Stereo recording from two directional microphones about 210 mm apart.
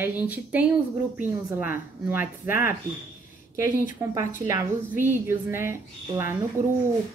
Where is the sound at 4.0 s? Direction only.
15° right (ahead or behind).